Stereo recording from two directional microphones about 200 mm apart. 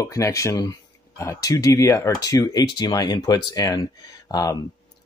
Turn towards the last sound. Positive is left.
turn(degrees=20)  # may be behind; listen again after turning